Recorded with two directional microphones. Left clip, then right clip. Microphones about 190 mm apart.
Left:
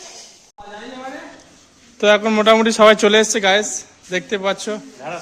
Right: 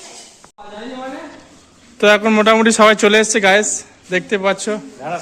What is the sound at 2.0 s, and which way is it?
A man's voice, 10° left (ahead or behind).